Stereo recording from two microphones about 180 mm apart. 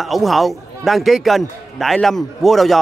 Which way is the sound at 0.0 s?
Centre (ahead or behind).